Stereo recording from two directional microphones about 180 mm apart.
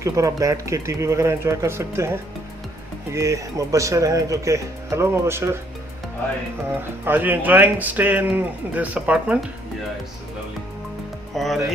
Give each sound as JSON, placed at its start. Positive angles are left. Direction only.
{"t": 0.0, "sound": "speech", "side_deg": -20}
{"t": 6.7, "sound": "speech", "side_deg": -10}
{"t": 11.3, "sound": "speech", "side_deg": 0}